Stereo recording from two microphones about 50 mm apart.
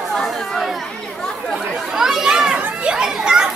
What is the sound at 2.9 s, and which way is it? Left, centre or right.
Children playing, centre.